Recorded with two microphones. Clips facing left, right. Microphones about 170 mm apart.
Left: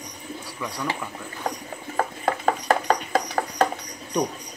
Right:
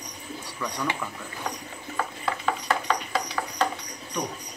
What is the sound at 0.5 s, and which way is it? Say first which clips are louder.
Speech: right 1 dB; 5° left (ahead or behind).